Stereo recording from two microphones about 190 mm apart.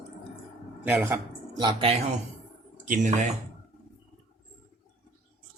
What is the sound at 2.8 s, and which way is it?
Speech, 40° right (ahead or behind).